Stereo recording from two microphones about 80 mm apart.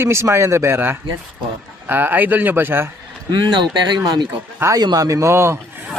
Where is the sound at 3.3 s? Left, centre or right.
Right.